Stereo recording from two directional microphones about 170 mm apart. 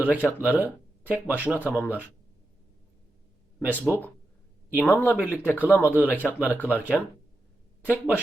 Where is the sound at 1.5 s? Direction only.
10° left (ahead or behind).